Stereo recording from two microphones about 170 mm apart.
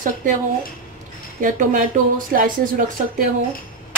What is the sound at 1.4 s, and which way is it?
A woman's voice, 50° right (ahead or behind).